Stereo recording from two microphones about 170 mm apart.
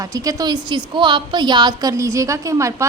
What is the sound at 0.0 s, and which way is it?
A woman's voice, 20° right (ahead or behind).